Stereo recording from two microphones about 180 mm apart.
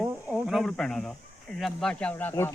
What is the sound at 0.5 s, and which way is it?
Speech, centre (ahead or behind).